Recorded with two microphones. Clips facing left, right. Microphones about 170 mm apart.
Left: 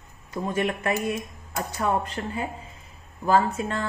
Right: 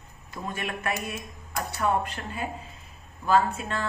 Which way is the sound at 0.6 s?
25° left (ahead or behind).